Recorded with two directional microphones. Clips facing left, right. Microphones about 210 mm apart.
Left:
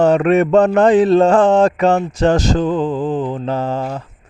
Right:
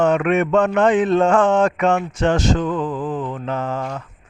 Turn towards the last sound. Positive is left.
turn(degrees=30)  # may be behind; listen again after turning